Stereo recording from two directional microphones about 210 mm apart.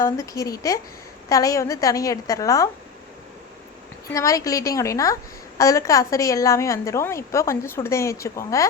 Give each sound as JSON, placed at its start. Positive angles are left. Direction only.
{"t": 0.0, "sound": "a woman's voice", "side_deg": 15}
{"t": 4.1, "sound": "a woman's voice", "side_deg": 15}